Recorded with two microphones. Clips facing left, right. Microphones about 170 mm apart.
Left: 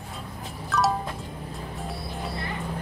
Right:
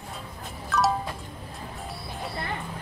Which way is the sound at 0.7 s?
Centre (ahead or behind).